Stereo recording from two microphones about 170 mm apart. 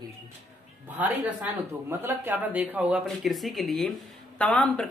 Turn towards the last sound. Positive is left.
turn(degrees=5)  # may be behind; listen again after turning